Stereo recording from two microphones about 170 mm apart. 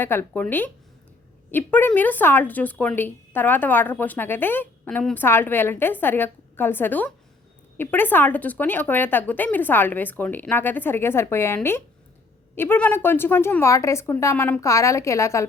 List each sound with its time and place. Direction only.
0.0 s speech: 15° left (ahead or behind)